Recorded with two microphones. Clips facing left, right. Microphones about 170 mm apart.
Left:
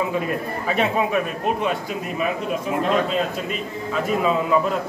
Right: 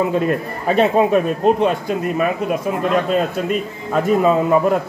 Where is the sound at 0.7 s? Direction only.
35° right (ahead or behind).